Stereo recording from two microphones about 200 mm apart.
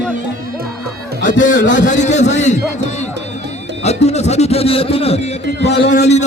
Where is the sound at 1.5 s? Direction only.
40° left (ahead or behind).